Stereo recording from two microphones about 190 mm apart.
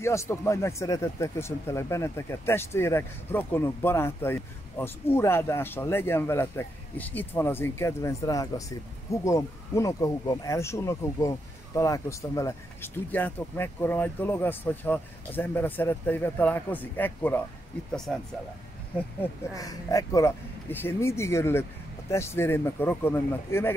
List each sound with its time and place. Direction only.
0.0 s speech: 15° left (ahead or behind)
19.5 s speech: 20° left (ahead or behind)